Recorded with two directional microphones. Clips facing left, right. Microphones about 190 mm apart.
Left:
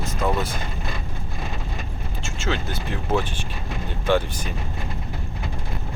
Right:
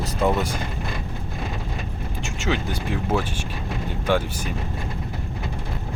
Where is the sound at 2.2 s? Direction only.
15° right (ahead or behind).